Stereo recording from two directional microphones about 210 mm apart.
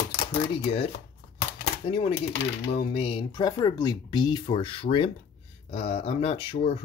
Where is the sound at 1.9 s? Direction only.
25° left (ahead or behind).